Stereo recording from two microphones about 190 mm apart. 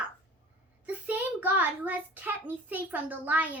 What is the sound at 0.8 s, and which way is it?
A child's voice, 10° right (ahead or behind).